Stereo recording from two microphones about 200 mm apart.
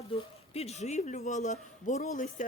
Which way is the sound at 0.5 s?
30° left (ahead or behind).